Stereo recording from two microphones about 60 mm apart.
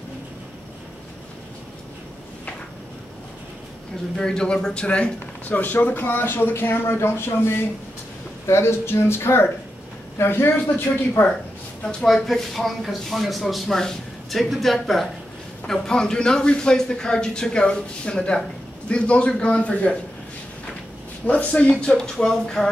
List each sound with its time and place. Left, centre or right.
4.2 s a man's voice: centre; by 10.5 s left
12.1 s a man's voice: centre; by 20.0 s left
21.3 s a man's voice: left